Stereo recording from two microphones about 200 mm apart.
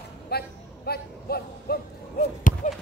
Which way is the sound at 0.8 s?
50° left (ahead or behind).